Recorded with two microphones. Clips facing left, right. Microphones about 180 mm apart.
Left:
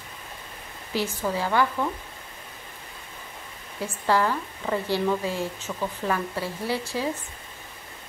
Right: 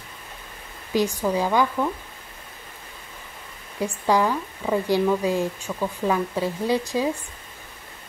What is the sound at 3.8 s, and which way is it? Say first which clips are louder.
Speech: right 3 dB; 15° right (ahead or behind).